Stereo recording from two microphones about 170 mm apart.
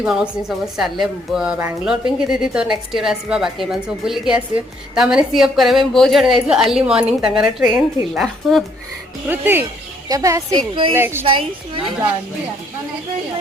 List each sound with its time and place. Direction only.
0.0 s a woman's voice: 5° right (ahead or behind)
9.2 s speech: 10° right (ahead or behind)
11.3 s a woman's voice: 30° right (ahead or behind)